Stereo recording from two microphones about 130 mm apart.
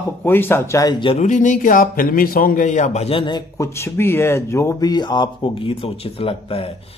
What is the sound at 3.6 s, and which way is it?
Speech, 20° left (ahead or behind).